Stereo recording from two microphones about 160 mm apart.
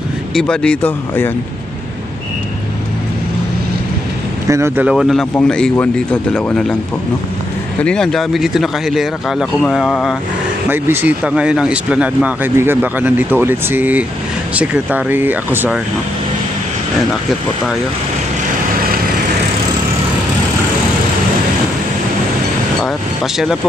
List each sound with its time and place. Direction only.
0.3 s speech: 5° left (ahead or behind)
4.5 s speech: 15° right (ahead or behind); by 6.8 s 5° left (ahead or behind)
7.8 s speech: 5° left (ahead or behind)
10.7 s speech: 15° right (ahead or behind)
23.3 s speech: centre (ahead or behind)